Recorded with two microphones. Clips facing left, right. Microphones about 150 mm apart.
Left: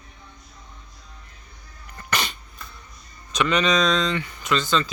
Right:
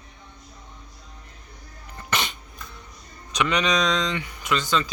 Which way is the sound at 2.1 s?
20° right (ahead or behind).